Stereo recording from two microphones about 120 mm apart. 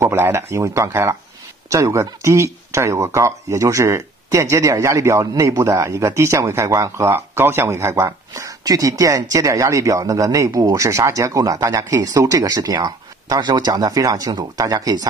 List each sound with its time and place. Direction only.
0.0 s speech: 20° right (ahead or behind)